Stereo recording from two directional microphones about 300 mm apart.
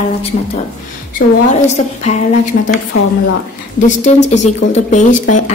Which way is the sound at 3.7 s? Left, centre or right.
Left.